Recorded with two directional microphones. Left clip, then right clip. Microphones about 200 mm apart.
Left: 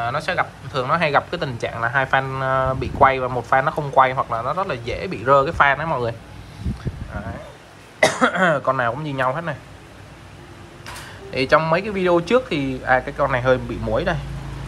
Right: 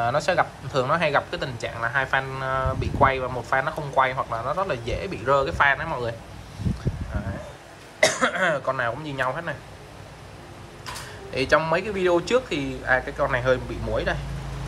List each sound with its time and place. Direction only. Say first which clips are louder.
0.0 s speech: even; 20° right (ahead or behind); by 6.1 s 5° right (ahead or behind)
8.0 s speech: left 4 dB; centre (ahead or behind)
11.3 s speech: left 4 dB; 10° right (ahead or behind)